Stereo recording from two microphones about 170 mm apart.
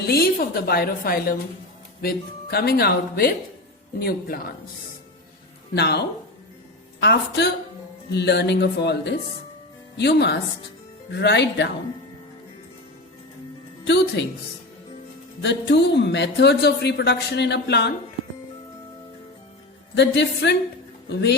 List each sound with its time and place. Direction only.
0.1 s speech: 65° left (ahead or behind)
5.7 s speech: 70° left (ahead or behind)
7.0 s speech: 80° left
10.0 s speech: 80° left
13.8 s a woman's voice: 90° left
15.4 s speech: 90° left
20.0 s speech: 85° left